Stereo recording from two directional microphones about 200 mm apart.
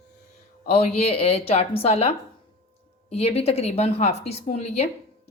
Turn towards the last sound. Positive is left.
turn(degrees=30)  # may be behind; listen again after turning